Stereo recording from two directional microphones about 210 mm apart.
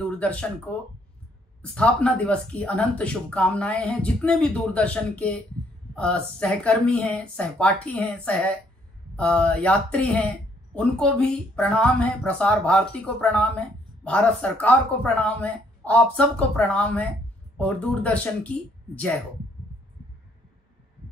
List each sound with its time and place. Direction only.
0.0 s speech: 5° left (ahead or behind)